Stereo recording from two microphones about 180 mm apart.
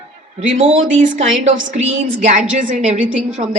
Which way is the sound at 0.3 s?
40° right (ahead or behind).